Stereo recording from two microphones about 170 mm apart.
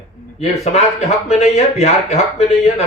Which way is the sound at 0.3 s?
40° left (ahead or behind).